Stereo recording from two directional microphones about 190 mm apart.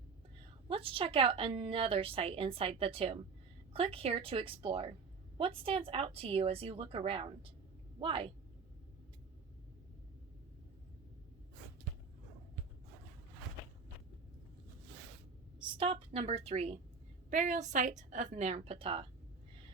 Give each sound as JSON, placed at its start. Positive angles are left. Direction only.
{"t": 0.7, "sound": "a woman's voice", "side_deg": -30}
{"t": 15.6, "sound": "a woman's voice", "side_deg": -30}